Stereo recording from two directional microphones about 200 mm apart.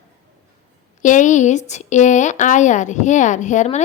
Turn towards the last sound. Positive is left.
turn(degrees=35)  # may be behind; listen again after turning